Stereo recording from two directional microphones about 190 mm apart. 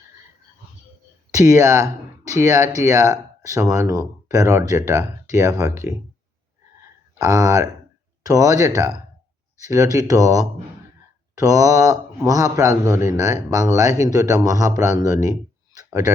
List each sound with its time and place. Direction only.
1.3 s a man's voice: 15° right (ahead or behind)
7.2 s a man's voice: 15° right (ahead or behind)